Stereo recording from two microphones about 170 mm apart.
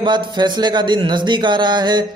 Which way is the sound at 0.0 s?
25° right (ahead or behind).